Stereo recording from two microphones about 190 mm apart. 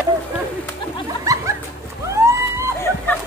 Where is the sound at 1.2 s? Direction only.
15° right (ahead or behind).